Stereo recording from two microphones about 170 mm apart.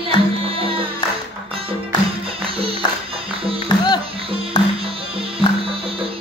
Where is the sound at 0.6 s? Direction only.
30° right (ahead or behind).